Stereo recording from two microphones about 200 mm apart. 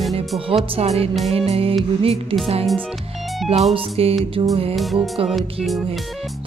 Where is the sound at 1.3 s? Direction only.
30° right (ahead or behind).